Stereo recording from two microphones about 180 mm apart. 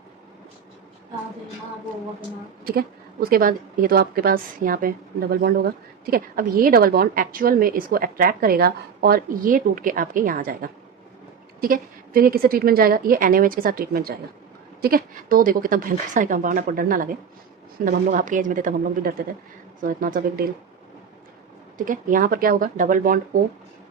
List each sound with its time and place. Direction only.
2.6 s a woman's voice: 55° right (ahead or behind)
21.8 s a woman's voice: 50° right (ahead or behind)